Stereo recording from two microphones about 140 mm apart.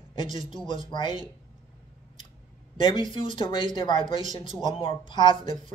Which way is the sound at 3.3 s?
35° left (ahead or behind).